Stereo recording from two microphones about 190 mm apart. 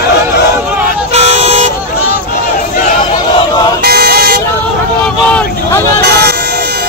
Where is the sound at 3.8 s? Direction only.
55° right (ahead or behind).